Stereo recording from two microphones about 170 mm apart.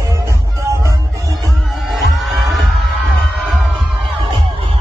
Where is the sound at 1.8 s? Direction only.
Centre (ahead or behind).